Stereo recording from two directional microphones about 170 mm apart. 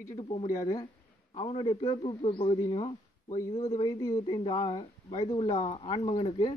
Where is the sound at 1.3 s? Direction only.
30° left (ahead or behind).